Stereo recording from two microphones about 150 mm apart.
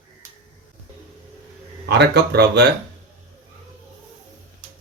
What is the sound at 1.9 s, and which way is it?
Speech, 90° right.